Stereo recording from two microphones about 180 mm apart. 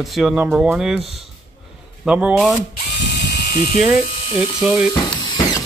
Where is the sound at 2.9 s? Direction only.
75° left (ahead or behind).